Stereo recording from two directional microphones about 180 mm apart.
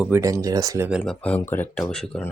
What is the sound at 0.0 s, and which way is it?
Speech, 15° right (ahead or behind).